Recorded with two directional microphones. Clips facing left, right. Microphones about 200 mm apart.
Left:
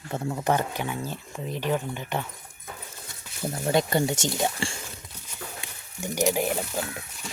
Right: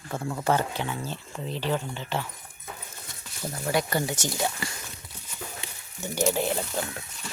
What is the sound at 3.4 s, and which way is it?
Speech, 25° left (ahead or behind).